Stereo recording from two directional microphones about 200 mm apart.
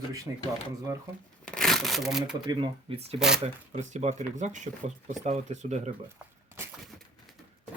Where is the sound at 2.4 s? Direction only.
30° right (ahead or behind).